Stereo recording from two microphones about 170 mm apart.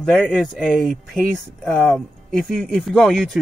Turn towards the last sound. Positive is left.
turn(degrees=0)  # may be behind; listen again after turning